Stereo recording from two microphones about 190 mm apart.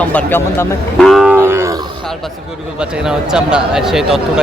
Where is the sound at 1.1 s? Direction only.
5° right (ahead or behind).